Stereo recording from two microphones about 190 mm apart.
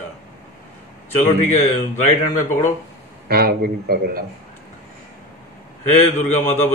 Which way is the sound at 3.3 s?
55° right (ahead or behind).